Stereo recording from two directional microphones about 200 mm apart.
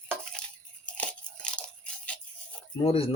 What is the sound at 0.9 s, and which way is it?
Crunch, 5° left (ahead or behind).